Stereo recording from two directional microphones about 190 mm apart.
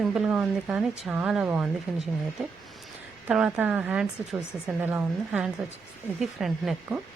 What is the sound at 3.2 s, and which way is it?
A woman's voice, 5° right (ahead or behind).